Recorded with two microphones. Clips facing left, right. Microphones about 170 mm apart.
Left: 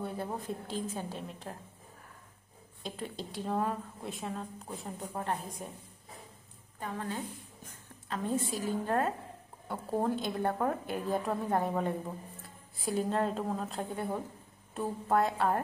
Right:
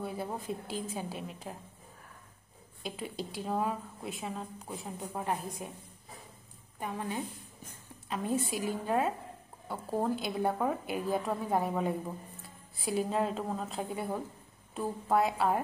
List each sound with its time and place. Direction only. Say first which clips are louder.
0.0 s a woman's voice: even; 5° right (ahead or behind)
2.8 s a woman's voice: right 1 dB; 5° right (ahead or behind)
6.8 s a woman's voice: right 1 dB; 15° right (ahead or behind)